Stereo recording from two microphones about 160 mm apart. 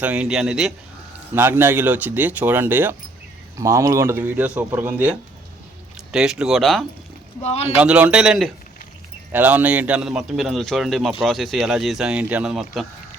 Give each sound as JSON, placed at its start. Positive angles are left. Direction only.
{"t": 0.0, "sound": "a man's voice", "side_deg": -10}
{"t": 1.3, "sound": "a man's voice", "side_deg": -15}
{"t": 7.4, "sound": "speech", "side_deg": 40}
{"t": 7.8, "sound": "a man's voice", "side_deg": -10}